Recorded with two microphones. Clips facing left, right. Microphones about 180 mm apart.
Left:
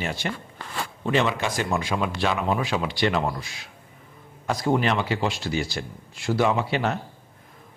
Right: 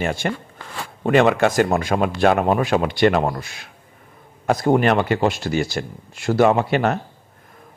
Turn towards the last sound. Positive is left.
turn(degrees=-55)  # may be behind; listen again after turning